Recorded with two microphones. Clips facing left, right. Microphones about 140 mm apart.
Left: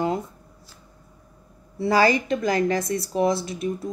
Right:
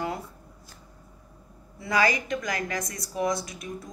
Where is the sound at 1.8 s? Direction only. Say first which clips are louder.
Left 6 dB; 30° left (ahead or behind).